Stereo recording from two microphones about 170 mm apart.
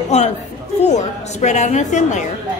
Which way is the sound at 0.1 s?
40° left (ahead or behind).